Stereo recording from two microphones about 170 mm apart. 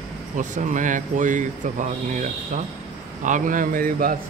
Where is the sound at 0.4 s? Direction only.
50° right (ahead or behind).